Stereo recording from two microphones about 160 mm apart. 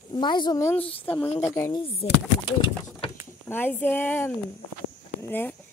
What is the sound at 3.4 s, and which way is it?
A woman's voice, 10° left (ahead or behind).